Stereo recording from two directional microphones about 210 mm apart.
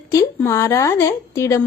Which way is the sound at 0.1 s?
15° left (ahead or behind).